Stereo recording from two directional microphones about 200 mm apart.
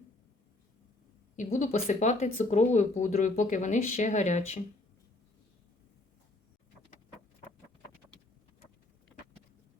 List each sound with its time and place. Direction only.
1.4 s speech: 40° left (ahead or behind)